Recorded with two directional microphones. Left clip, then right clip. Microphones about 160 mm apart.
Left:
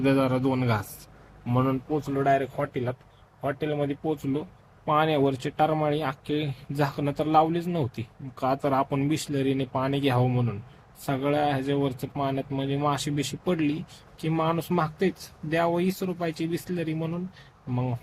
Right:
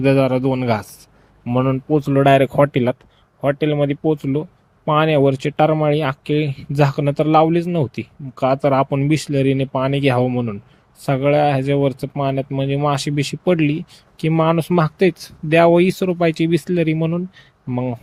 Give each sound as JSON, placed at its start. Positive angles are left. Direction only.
{"t": 0.0, "sound": "speech", "side_deg": -40}
{"t": 2.0, "sound": "speech", "side_deg": -55}
{"t": 3.4, "sound": "speech", "side_deg": -45}
{"t": 17.7, "sound": "speech", "side_deg": -40}